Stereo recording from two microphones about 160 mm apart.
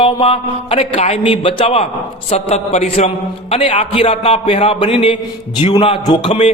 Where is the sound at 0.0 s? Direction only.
35° left (ahead or behind).